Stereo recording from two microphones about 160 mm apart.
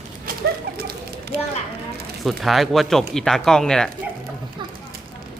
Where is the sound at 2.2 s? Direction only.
Centre (ahead or behind).